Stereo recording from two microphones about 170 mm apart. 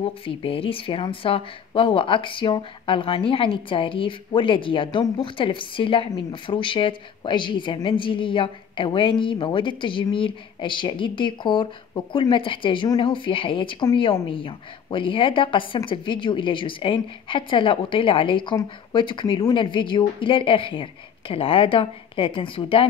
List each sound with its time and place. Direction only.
0.0 s a woman's voice: 30° left (ahead or behind)